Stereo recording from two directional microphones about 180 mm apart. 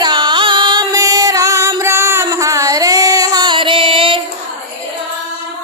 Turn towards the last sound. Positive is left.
turn(degrees=-30)  # may be behind; listen again after turning